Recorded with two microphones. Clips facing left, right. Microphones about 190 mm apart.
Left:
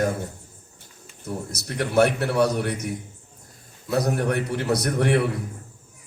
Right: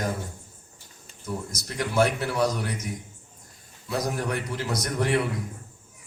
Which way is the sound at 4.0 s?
60° left (ahead or behind).